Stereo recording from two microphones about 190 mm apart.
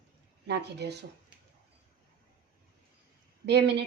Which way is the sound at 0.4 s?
60° right (ahead or behind).